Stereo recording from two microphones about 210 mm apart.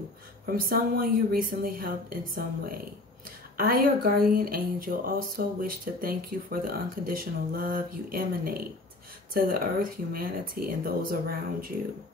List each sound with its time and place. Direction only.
0.5 s speech: 45° right (ahead or behind)